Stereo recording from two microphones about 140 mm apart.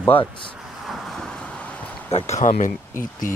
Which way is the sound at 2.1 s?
55° left (ahead or behind).